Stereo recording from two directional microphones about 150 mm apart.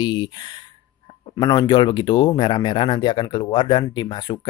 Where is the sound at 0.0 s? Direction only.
30° left (ahead or behind).